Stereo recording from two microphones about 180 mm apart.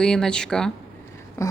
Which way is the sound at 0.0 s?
5° left (ahead or behind).